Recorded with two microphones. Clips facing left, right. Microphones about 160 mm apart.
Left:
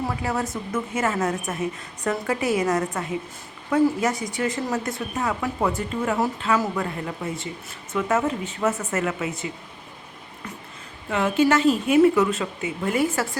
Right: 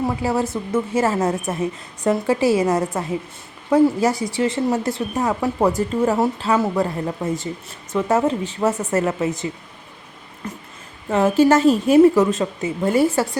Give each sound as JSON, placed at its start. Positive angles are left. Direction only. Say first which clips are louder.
{"t": 0.0, "sound": "a woman's voice", "louder": "right 5 dB", "side_deg": -25}
{"t": 11.1, "sound": "speech", "louder": "right 5 dB", "side_deg": -40}